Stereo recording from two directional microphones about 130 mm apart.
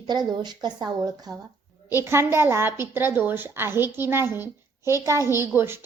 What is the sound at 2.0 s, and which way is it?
A woman's voice, 20° right (ahead or behind).